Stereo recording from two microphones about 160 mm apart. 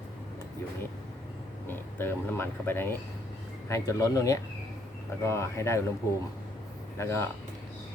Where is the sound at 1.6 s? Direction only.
15° left (ahead or behind).